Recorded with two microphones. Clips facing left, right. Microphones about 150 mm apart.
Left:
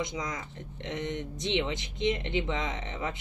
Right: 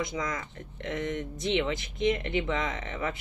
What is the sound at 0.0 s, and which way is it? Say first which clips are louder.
Speech: right 2 dB; 20° left (ahead or behind).